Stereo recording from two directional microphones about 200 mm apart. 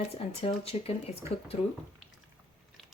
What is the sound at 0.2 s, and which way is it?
Speech, 30° left (ahead or behind).